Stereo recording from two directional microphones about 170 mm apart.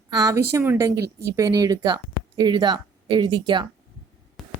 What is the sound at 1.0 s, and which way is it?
Speech, 70° right (ahead or behind).